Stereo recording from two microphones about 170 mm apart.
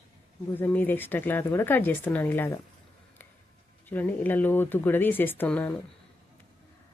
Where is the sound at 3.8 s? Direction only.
10° left (ahead or behind).